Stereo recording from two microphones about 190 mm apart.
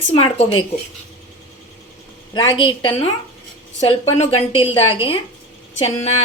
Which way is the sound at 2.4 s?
25° left (ahead or behind).